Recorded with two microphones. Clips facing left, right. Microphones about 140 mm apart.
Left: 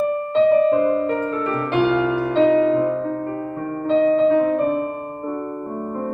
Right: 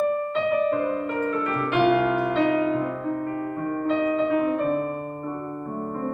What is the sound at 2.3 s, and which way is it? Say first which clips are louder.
Music: left 6 dB; 25° left (ahead or behind).